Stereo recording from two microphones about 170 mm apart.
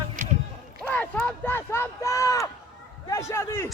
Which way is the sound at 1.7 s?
20° left (ahead or behind).